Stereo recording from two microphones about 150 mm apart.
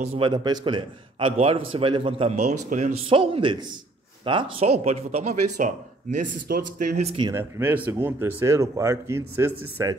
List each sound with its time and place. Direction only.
0.0 s a man's voice: 40° right (ahead or behind)
3.1 s a man's voice: 35° right (ahead or behind)
6.4 s speech: 65° right (ahead or behind); by 7.2 s 50° right (ahead or behind)
7.3 s a man's voice: 15° right (ahead or behind)